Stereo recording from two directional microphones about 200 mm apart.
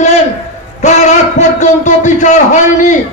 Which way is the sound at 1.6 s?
35° left (ahead or behind).